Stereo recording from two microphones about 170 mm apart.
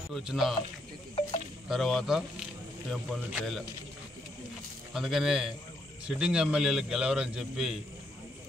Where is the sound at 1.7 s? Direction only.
Centre (ahead or behind).